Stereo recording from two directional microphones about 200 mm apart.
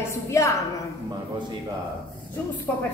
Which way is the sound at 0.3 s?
15° left (ahead or behind).